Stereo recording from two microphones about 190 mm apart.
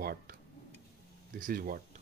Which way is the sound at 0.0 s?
55° right (ahead or behind).